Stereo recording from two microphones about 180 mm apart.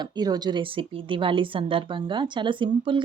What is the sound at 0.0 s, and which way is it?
Speech, 20° right (ahead or behind).